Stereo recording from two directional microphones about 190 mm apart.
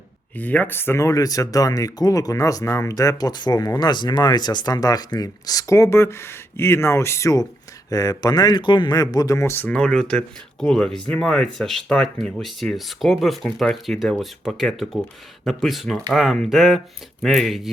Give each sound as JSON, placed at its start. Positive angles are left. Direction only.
{"t": 0.3, "sound": "speech", "side_deg": 10}